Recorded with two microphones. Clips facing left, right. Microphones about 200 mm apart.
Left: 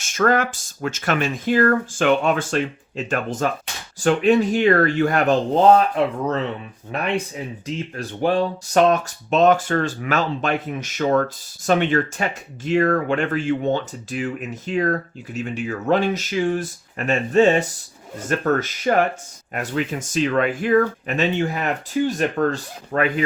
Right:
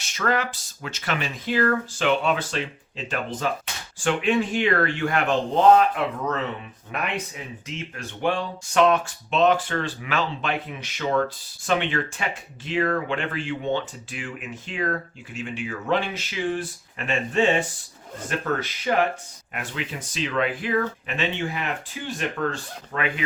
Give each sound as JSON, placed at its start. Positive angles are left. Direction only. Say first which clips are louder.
{"t": 0.0, "sound": "speech", "louder": "left 6 dB", "side_deg": 45}
{"t": 6.9, "sound": "speech", "louder": "left 6 dB", "side_deg": 30}